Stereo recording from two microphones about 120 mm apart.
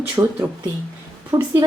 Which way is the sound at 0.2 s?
20° right (ahead or behind).